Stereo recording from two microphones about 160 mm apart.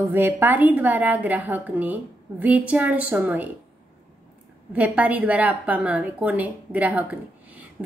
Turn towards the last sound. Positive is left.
turn(degrees=-10)  # may be behind; listen again after turning